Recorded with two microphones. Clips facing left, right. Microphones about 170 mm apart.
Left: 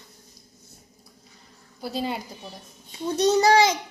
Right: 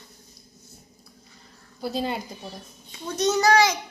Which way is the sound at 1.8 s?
5° left (ahead or behind).